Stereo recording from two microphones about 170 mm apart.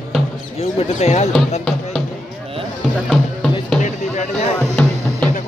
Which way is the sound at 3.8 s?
45° left (ahead or behind).